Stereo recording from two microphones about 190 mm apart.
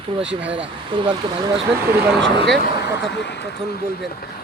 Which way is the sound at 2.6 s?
65° left (ahead or behind).